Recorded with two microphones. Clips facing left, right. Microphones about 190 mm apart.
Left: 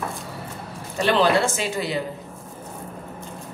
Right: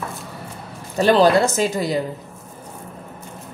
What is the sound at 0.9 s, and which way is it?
A woman's voice, 40° right (ahead or behind).